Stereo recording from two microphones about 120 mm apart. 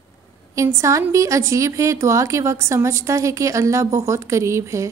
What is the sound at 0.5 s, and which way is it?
Speech, 25° right (ahead or behind).